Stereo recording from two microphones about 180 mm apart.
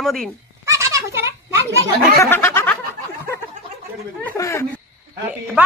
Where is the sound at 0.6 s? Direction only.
15° right (ahead or behind).